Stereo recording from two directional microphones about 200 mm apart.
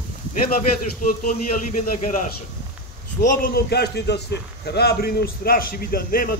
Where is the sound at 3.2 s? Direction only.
45° left (ahead or behind).